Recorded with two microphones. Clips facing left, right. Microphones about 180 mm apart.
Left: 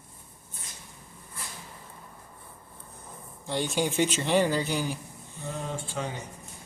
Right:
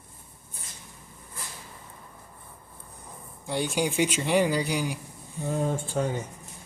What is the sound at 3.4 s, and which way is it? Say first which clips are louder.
Speech: right 1 dB; 10° right (ahead or behind).